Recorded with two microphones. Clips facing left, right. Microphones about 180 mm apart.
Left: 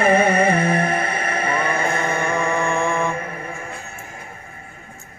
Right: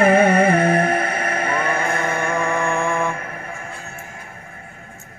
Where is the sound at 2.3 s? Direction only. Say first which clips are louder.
Even; 15° left (ahead or behind).